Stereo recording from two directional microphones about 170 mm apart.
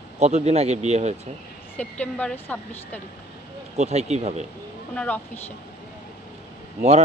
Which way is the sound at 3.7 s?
40° right (ahead or behind).